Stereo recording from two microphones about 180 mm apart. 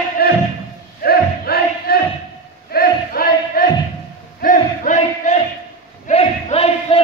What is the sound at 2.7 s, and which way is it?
Crowd, 55° left (ahead or behind).